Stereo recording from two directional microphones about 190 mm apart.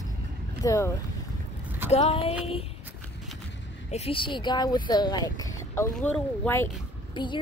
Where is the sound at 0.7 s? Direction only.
15° left (ahead or behind).